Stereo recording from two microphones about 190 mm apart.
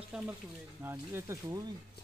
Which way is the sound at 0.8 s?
15° right (ahead or behind).